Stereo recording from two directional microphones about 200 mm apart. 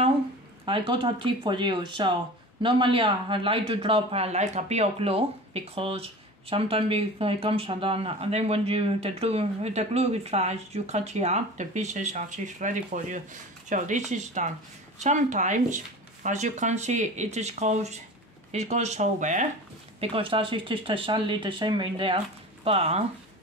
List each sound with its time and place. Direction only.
0.7 s a man's voice: 25° right (ahead or behind)
20.0 s a man's voice: 25° right (ahead or behind)